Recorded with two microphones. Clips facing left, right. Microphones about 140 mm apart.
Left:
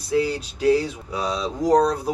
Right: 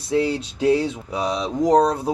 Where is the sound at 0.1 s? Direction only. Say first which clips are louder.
Right 1 dB; 25° right (ahead or behind).